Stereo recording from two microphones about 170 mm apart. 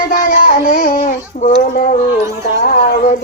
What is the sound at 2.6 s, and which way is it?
Speech, 50° left (ahead or behind).